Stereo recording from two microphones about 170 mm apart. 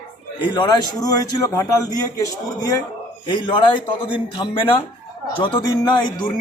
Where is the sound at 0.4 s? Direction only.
25° left (ahead or behind).